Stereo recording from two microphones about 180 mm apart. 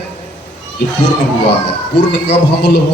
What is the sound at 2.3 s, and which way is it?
Speech, 70° left (ahead or behind).